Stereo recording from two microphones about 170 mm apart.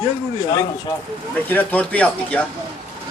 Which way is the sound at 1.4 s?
10° left (ahead or behind).